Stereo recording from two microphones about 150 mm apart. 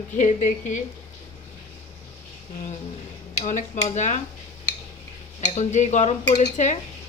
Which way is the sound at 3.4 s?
50° left (ahead or behind).